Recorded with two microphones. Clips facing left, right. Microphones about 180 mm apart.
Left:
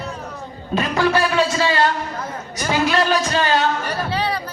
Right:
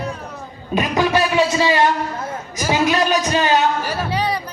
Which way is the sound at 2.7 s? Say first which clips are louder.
Right 1 dB; 20° right (ahead or behind).